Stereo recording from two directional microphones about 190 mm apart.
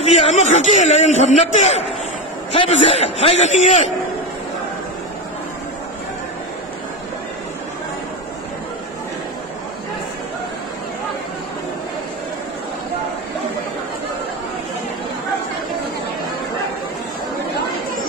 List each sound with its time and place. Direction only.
0.0 s a man's voice: 40° left (ahead or behind)